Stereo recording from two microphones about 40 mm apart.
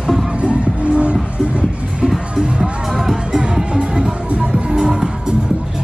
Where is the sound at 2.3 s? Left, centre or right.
Centre.